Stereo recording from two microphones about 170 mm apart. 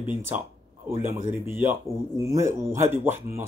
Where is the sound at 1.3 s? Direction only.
10° right (ahead or behind).